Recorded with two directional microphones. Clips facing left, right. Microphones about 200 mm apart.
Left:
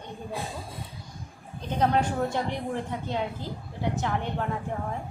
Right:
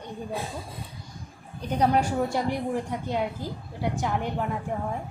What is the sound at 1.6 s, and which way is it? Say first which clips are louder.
A woman's voice: right 2 dB; 10° right (ahead or behind).